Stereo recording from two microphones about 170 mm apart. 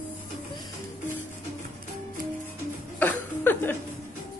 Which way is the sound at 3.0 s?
10° left (ahead or behind).